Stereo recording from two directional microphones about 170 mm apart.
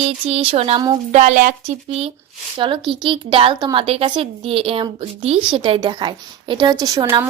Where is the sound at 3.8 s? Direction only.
35° right (ahead or behind); by 7.2 s 15° right (ahead or behind).